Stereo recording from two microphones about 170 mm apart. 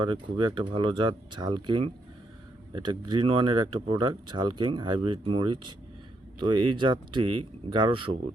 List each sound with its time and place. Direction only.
0.0 s speech: 30° right (ahead or behind)